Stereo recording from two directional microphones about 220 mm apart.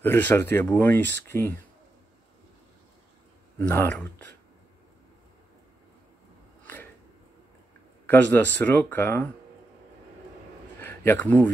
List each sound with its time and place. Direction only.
0.0 s speech: 10° left (ahead or behind)
3.5 s speech: 10° left (ahead or behind)
8.1 s speech: 10° left (ahead or behind)
10.8 s speech: 10° left (ahead or behind)